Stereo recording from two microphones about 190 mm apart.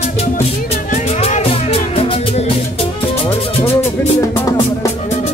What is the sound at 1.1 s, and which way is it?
Music, 35° left (ahead or behind).